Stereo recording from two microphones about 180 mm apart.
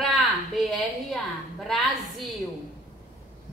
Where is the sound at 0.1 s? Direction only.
Centre (ahead or behind).